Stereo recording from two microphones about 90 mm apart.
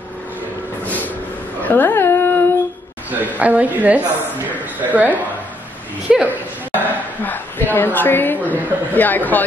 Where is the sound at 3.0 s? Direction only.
20° right (ahead or behind).